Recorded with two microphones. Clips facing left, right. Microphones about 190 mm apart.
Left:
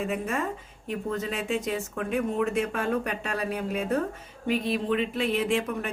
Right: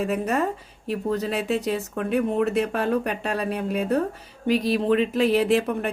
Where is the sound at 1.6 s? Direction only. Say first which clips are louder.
Right 4 dB; 35° right (ahead or behind).